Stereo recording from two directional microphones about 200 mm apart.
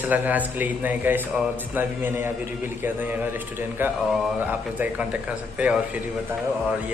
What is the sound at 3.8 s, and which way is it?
A man's voice, 10° right (ahead or behind).